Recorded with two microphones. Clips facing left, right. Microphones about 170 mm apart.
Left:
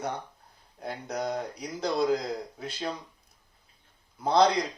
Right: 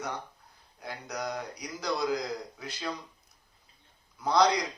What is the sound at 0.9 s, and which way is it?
A man's voice, 30° left (ahead or behind).